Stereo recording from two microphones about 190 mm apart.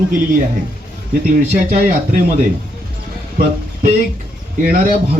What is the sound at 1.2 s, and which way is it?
Speech, 50° right (ahead or behind).